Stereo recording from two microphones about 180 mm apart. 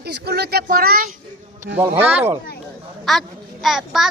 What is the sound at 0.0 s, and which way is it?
Speech, 65° right (ahead or behind).